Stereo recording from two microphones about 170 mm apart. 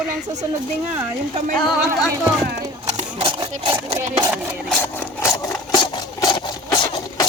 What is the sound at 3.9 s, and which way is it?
Speech, 10° right (ahead or behind).